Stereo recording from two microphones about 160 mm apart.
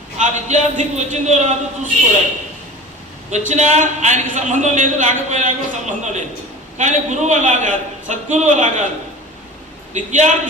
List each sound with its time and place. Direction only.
0.2 s a man's voice: 50° right (ahead or behind)
3.2 s a man's voice: 45° right (ahead or behind)
9.9 s a man's voice: 50° right (ahead or behind)